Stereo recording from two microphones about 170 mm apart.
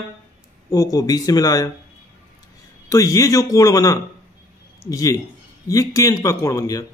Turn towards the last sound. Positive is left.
turn(degrees=20)  # may be behind; listen again after turning